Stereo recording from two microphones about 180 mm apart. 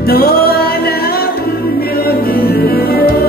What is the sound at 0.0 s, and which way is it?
Music, 60° left (ahead or behind).